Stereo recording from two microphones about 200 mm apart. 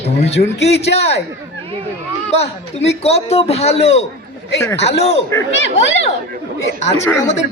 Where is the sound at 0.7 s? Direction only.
30° left (ahead or behind).